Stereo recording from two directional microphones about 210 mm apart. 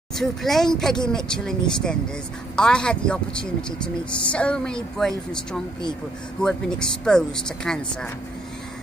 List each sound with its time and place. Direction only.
0.2 s speech: centre (ahead or behind)